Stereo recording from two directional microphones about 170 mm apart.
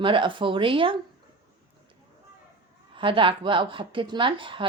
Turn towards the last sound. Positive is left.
turn(degrees=-30)  # may be behind; listen again after turning